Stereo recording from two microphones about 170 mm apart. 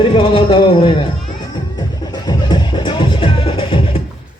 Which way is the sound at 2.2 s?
25° left (ahead or behind).